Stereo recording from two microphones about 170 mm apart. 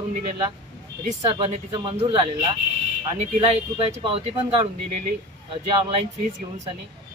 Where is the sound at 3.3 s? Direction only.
30° right (ahead or behind).